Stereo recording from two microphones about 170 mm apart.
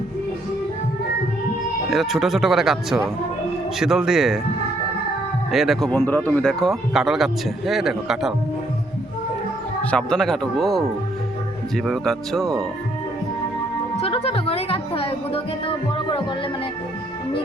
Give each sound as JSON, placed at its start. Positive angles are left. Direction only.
{"t": 1.9, "sound": "a man's voice", "side_deg": 0}
{"t": 5.5, "sound": "a man's voice", "side_deg": 0}
{"t": 5.9, "sound": "a man's voice", "side_deg": 10}
{"t": 9.8, "sound": "a man's voice", "side_deg": 5}
{"t": 13.9, "sound": "music", "side_deg": 35}